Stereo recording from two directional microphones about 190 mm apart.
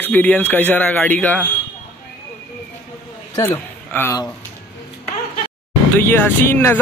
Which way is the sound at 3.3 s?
15° left (ahead or behind).